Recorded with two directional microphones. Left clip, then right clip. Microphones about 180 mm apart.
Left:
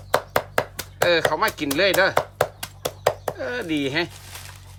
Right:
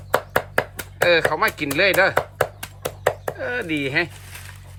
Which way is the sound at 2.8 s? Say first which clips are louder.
Even; 35° left (ahead or behind).